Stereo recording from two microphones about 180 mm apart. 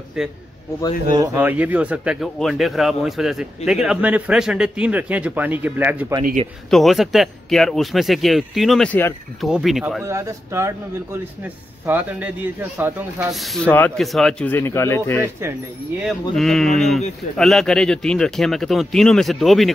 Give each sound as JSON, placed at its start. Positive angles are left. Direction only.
{"t": 0.2, "sound": "speech", "side_deg": -5}
{"t": 1.1, "sound": "speech", "side_deg": -15}
{"t": 6.7, "sound": "speech", "side_deg": 0}
{"t": 10.0, "sound": "speech", "side_deg": -15}
{"t": 13.3, "sound": "speech", "side_deg": 0}
{"t": 16.3, "sound": "speech", "side_deg": 0}